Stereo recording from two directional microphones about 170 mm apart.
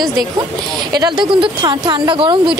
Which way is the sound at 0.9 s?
25° right (ahead or behind).